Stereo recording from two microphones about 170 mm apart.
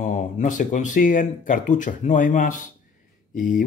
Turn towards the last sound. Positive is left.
turn(degrees=50)  # may be behind; listen again after turning